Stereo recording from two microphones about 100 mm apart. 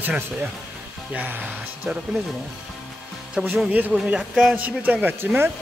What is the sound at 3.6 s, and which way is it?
Speech, 10° right (ahead or behind).